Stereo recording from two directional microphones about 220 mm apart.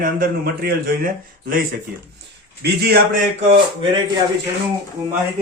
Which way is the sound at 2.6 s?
45° right (ahead or behind).